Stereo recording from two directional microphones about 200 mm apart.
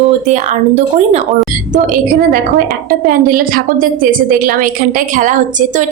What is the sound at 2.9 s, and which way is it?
A woman's voice, 45° right (ahead or behind).